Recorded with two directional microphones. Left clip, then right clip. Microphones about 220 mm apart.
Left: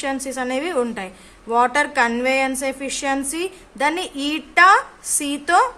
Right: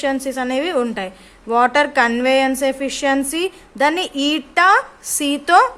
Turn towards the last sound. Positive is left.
turn(degrees=-20)  # may be behind; listen again after turning